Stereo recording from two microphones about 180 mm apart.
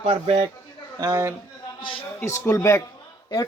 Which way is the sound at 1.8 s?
30° left (ahead or behind).